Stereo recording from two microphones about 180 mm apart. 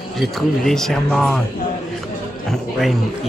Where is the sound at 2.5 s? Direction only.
Centre (ahead or behind).